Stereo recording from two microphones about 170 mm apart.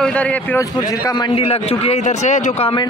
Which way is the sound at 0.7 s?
20° left (ahead or behind).